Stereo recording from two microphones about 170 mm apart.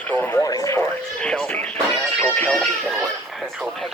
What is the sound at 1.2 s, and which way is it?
Music, 5° left (ahead or behind).